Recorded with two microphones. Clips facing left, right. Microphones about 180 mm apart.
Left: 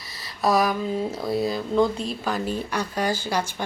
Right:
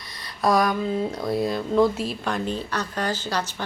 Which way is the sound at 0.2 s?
5° left (ahead or behind).